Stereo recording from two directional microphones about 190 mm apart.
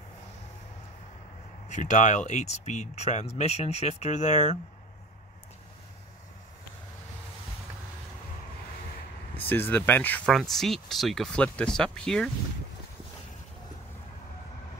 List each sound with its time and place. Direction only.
1.7 s speech: 40° left (ahead or behind)
9.5 s speech: 10° left (ahead or behind)